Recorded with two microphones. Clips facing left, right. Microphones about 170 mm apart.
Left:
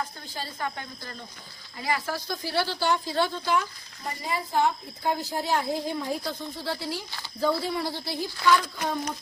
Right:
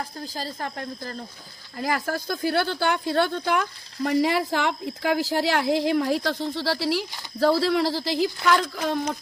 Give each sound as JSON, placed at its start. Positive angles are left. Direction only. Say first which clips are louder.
{"t": 0.3, "sound": "a woman's voice", "louder": "right 1 dB", "side_deg": -35}
{"t": 1.8, "sound": "a woman's voice", "louder": "right 3 dB", "side_deg": -50}